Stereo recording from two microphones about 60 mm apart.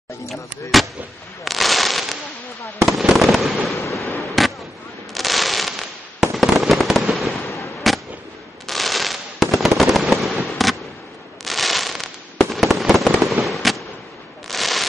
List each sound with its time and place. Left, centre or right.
0.3 s speech: centre
1.4 s fireworks: centre
3.7 s fireworks: left
4.4 s fireworks: centre
7.8 s a sound: centre
8.6 s fireworks: centre
14.5 s a sound: centre